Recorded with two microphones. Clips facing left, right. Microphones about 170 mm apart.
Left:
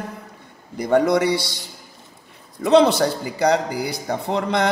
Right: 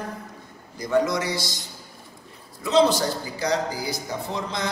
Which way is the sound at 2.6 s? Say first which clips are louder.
Left 5 dB; 60° left (ahead or behind).